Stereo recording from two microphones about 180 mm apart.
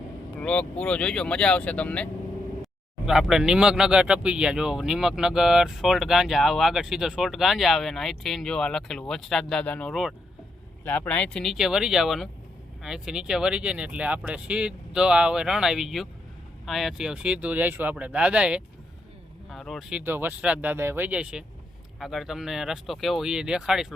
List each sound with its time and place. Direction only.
0.3 s speech: 5° left (ahead or behind)
3.1 s a man's voice: centre (ahead or behind)
10.8 s a man's voice: 10° left (ahead or behind)